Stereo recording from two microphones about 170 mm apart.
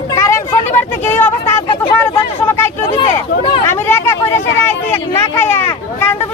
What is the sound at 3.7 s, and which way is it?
Speech, 15° left (ahead or behind).